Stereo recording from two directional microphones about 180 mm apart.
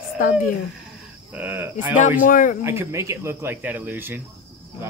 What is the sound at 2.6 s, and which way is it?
Speech, 15° right (ahead or behind).